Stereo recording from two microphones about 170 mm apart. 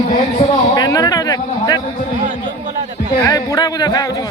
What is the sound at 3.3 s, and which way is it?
Speech, 20° left (ahead or behind).